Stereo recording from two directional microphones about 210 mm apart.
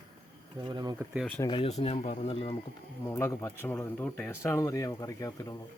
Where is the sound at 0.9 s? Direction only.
5° right (ahead or behind).